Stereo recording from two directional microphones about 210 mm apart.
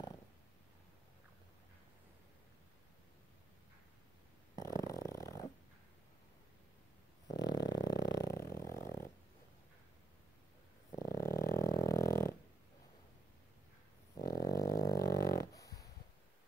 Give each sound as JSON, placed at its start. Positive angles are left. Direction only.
{"t": 4.6, "sound": "dog", "side_deg": 15}
{"t": 7.3, "sound": "music", "side_deg": 55}
{"t": 8.3, "sound": "dog", "side_deg": 15}
{"t": 11.0, "sound": "dog", "side_deg": 15}
{"t": 11.6, "sound": "music", "side_deg": 15}
{"t": 14.2, "sound": "dog", "side_deg": 45}
{"t": 14.5, "sound": "a sound", "side_deg": 15}
{"t": 15.1, "sound": "dog", "side_deg": 45}
{"t": 15.5, "sound": "a sound", "side_deg": 15}